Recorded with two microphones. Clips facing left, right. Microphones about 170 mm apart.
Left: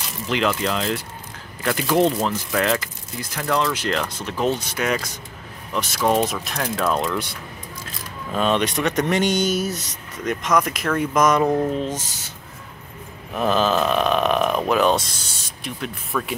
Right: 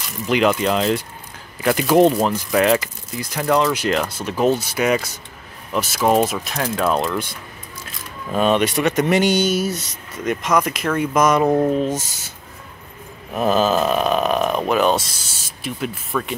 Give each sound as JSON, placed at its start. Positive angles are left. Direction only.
{"t": 0.3, "sound": "speech", "side_deg": -15}
{"t": 8.3, "sound": "speech", "side_deg": -10}
{"t": 13.6, "sound": "speech", "side_deg": -5}